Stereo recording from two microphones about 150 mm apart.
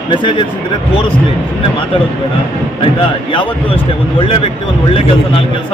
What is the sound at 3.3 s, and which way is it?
Speech, 35° left (ahead or behind).